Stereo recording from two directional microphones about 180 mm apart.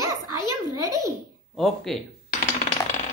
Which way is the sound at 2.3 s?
35° left (ahead or behind).